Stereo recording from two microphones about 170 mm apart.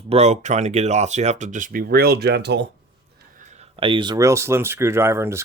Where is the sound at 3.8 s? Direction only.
30° right (ahead or behind).